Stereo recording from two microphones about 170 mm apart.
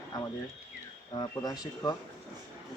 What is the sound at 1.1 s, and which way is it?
Speech, 25° left (ahead or behind).